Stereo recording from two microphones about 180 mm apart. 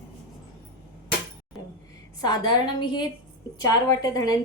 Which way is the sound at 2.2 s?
25° left (ahead or behind).